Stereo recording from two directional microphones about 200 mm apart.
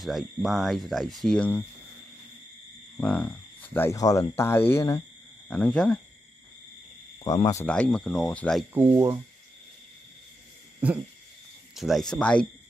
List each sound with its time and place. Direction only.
0.0 s speech: centre (ahead or behind)
3.0 s speech: 5° left (ahead or behind)
7.2 s speech: 20° left (ahead or behind)
7.6 s speech: 5° left (ahead or behind)
8.7 s speech: 10° right (ahead or behind)
10.8 s speech: 5° right (ahead or behind)